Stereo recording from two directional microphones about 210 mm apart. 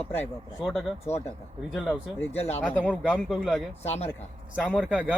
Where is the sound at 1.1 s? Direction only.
30° left (ahead or behind).